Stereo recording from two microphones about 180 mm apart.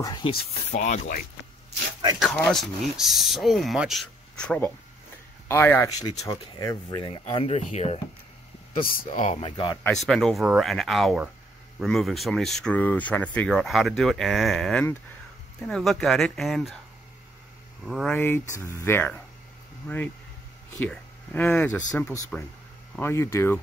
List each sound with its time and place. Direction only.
0.0 s speech: 25° left (ahead or behind)
0.7 s speech: 40° left (ahead or behind)
2.1 s speech: centre (ahead or behind); by 9.4 s 45° left (ahead or behind)
9.4 s speech: 30° left (ahead or behind)
10.0 s speech: centre (ahead or behind)
17.8 s speech: centre (ahead or behind)